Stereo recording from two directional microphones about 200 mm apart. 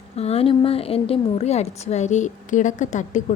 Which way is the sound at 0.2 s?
30° left (ahead or behind).